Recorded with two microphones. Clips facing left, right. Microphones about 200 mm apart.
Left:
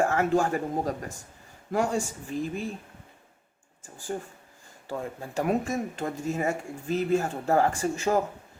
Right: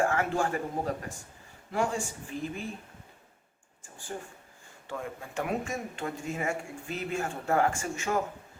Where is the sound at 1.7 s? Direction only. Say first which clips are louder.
Left 3 dB; 40° left (ahead or behind).